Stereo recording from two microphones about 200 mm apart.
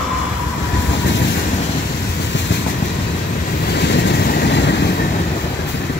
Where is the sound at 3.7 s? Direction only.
60° left (ahead or behind).